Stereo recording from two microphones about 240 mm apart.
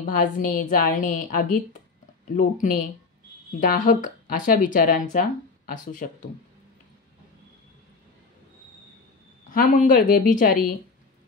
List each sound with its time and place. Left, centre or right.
0.0 s speech: left
9.5 s speech: left